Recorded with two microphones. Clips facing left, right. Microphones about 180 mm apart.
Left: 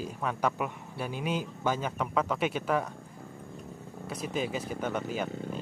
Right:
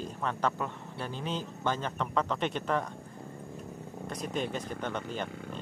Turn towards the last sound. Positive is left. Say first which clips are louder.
# left 3 dB
turn(degrees=10)  # may be behind; listen again after turning